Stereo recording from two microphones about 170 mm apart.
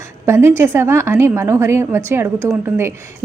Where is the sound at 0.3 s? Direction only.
15° right (ahead or behind).